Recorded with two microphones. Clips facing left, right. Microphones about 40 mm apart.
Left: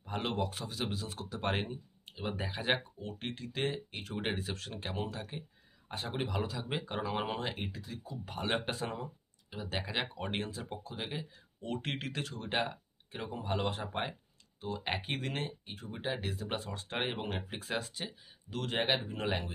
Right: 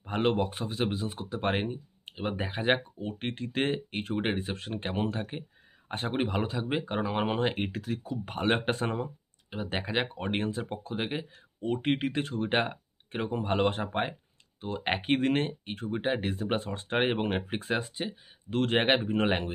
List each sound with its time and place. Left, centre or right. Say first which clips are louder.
0.0 s speech: right 8 dB; right
10.5 s speech: right 8 dB; right
11.6 s speech: right 9 dB; right
15.9 s speech: right 7 dB; right
17.7 s speech: right 3 dB; right
18.5 s speech: right 7 dB; right